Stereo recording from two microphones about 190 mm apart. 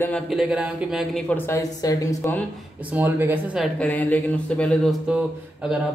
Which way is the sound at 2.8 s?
10° right (ahead or behind).